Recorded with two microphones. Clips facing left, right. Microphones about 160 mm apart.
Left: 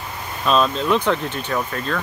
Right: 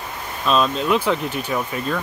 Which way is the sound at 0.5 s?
Centre (ahead or behind).